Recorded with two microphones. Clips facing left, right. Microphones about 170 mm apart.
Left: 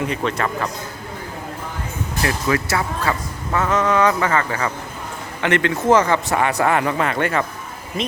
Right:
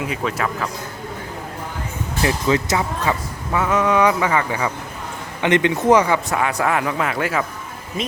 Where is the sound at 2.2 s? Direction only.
20° right (ahead or behind).